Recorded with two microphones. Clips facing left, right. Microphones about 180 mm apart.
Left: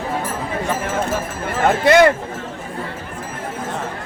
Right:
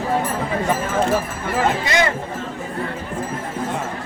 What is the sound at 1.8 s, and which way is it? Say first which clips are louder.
Speech: left 8 dB; 65° left (ahead or behind).